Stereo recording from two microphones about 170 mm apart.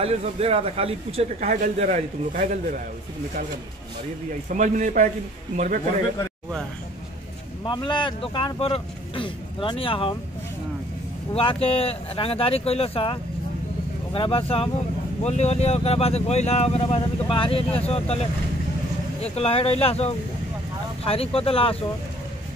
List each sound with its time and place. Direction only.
0.0 s speech: 35° right (ahead or behind)
1.5 s a man's voice: 45° right (ahead or behind)
4.5 s a man's voice: 50° right (ahead or behind)
7.6 s speech: 30° left (ahead or behind)
11.3 s speech: 35° left (ahead or behind)